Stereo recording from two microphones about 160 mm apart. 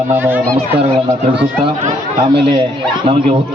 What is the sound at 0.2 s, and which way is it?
Speech, 10° right (ahead or behind).